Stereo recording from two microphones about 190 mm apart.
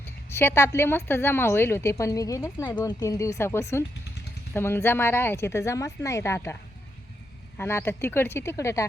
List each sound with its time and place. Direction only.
0.0 s a woman's voice: 10° left (ahead or behind)